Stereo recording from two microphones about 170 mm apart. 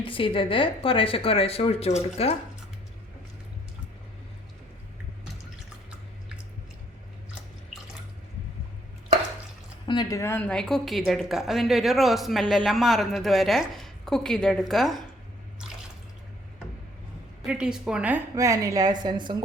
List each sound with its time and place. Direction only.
0.0 s speech: 30° left (ahead or behind)
9.8 s speech: 25° left (ahead or behind); by 15.0 s centre (ahead or behind)
17.4 s speech: 5° right (ahead or behind)
18.3 s a woman's voice: 20° right (ahead or behind)